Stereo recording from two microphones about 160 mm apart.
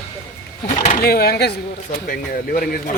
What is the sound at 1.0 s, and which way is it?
Speech, 75° left (ahead or behind).